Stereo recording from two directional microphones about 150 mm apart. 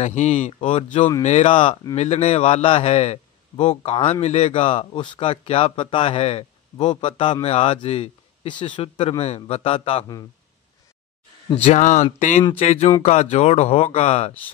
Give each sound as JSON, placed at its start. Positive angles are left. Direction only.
{"t": 0.0, "sound": "a man's voice", "side_deg": 50}
{"t": 2.0, "sound": "a man's voice", "side_deg": 50}
{"t": 7.4, "sound": "a man's voice", "side_deg": 45}
{"t": 11.4, "sound": "a man's voice", "side_deg": 45}